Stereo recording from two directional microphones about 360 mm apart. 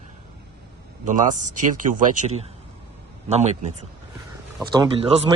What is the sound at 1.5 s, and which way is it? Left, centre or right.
Speech, right.